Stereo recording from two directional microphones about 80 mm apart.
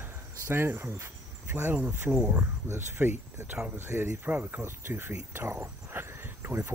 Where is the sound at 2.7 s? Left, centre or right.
Right.